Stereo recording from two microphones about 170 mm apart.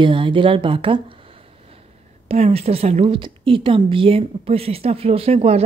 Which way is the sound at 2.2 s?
40° right (ahead or behind).